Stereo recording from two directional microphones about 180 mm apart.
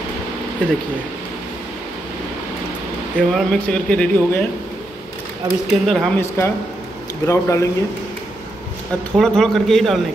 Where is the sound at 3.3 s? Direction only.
5° left (ahead or behind).